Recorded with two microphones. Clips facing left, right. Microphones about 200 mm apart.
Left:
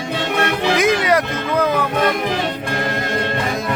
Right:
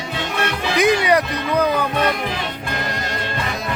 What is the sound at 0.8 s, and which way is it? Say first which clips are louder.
Music: right 3 dB; centre (ahead or behind).